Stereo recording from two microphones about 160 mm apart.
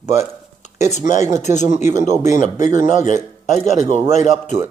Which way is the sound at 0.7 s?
45° left (ahead or behind).